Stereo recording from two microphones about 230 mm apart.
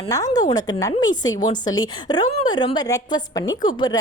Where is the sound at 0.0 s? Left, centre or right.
Centre.